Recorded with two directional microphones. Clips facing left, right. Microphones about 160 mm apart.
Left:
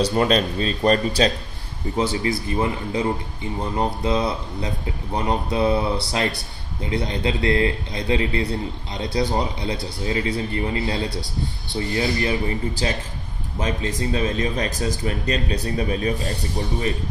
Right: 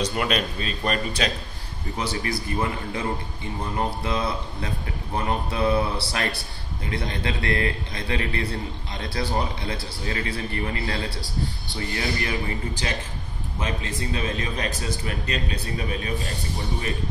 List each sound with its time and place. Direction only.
0.0 s a man's voice: 30° left (ahead or behind)